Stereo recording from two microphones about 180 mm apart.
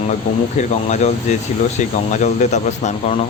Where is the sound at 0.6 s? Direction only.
40° left (ahead or behind).